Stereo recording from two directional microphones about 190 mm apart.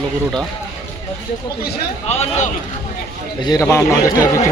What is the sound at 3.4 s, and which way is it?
Speech, 15° left (ahead or behind).